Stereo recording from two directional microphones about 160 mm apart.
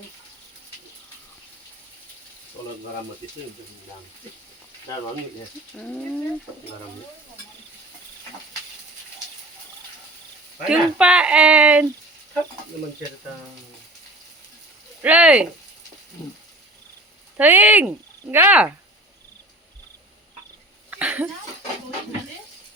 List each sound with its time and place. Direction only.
2.6 s sizzle: 25° left (ahead or behind)
5.7 s speech: 5° left (ahead or behind)
10.7 s speech: 5° right (ahead or behind)
15.0 s speech: 10° right (ahead or behind)
17.3 s speech: 10° right (ahead or behind)
20.9 s a sound: 10° right (ahead or behind)